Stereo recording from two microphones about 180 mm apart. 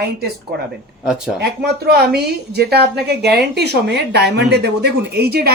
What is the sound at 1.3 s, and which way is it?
Speech, 65° right (ahead or behind).